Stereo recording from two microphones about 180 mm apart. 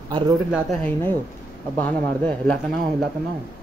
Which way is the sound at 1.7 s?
5° left (ahead or behind).